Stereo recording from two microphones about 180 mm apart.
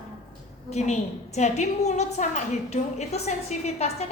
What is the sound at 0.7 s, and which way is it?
A woman's voice, 40° left (ahead or behind).